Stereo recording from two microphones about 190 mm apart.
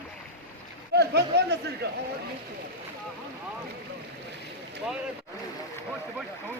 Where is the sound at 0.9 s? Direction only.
60° right (ahead or behind).